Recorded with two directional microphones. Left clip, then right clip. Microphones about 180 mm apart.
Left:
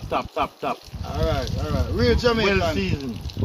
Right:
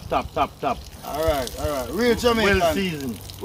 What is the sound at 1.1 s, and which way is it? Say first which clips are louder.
Speech: right 3 dB; 35° right (ahead or behind).